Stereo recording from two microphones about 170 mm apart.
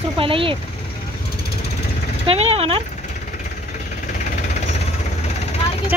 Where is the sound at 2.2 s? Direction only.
35° right (ahead or behind).